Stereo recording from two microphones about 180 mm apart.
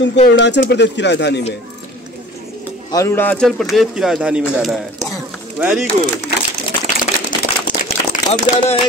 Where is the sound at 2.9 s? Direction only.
15° left (ahead or behind); by 4.8 s centre (ahead or behind).